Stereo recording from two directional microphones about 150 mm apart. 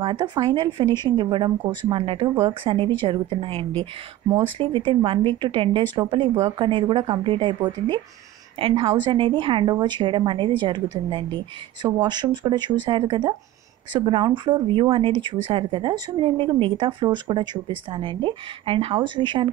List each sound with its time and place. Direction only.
0.0 s speech: 30° right (ahead or behind)